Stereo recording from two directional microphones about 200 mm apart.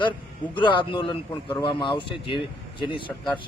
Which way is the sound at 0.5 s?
25° left (ahead or behind).